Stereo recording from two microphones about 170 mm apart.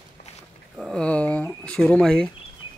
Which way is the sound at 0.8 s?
5° left (ahead or behind).